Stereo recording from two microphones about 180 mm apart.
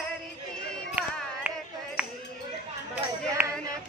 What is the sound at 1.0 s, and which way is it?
Music, 10° right (ahead or behind).